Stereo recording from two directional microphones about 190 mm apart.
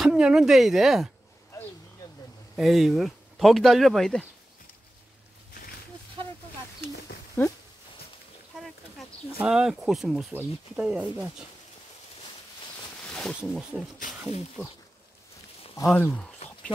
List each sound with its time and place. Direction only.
0.0 s speech: 5° right (ahead or behind)
2.5 s speech: centre (ahead or behind)
7.4 s speech: 10° left (ahead or behind)
9.4 s speech: 5° right (ahead or behind)
13.0 s speech: 5° left (ahead or behind)
15.6 s a sound: 20° left (ahead or behind)
15.9 s speech: 5° left (ahead or behind)